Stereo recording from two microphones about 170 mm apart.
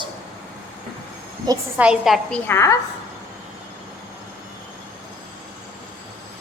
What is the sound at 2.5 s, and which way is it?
Speech, 15° left (ahead or behind).